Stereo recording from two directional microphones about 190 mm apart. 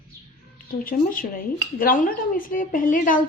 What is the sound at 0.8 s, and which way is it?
A woman's voice, 45° left (ahead or behind).